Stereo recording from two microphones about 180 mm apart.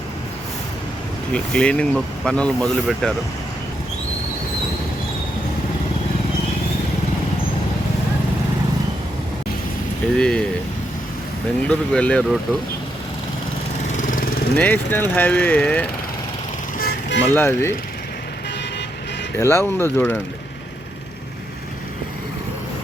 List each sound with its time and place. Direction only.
1.3 s speech: 5° left (ahead or behind)
10.2 s speech: 5° left (ahead or behind)
11.7 s speech: 5° left (ahead or behind)
13.9 s lawn mower: 50° left (ahead or behind)
14.5 s speech: 10° left (ahead or behind)
16.7 s vehicle: 70° left (ahead or behind)
17.3 s speech: 15° left (ahead or behind)
19.4 s speech: 15° left (ahead or behind)